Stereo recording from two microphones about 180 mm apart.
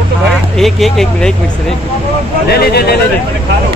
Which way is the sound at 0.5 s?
Centre (ahead or behind).